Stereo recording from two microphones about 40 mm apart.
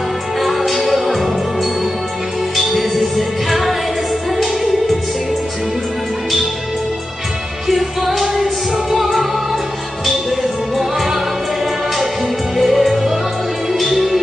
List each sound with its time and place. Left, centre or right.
0.4 s music: centre
7.6 s music: centre
12.5 s music: centre